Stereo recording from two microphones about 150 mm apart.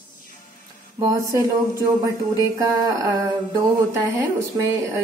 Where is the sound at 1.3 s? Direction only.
20° right (ahead or behind).